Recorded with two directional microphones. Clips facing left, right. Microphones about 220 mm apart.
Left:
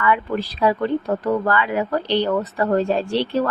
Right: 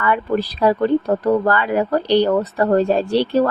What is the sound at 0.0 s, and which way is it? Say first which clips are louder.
Speech: right 2 dB; 40° right (ahead or behind).